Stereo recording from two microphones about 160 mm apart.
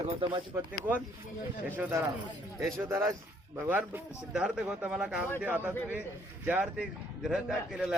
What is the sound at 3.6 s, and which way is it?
A man's voice, 10° right (ahead or behind).